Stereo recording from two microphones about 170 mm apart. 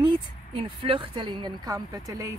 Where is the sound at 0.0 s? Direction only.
30° right (ahead or behind).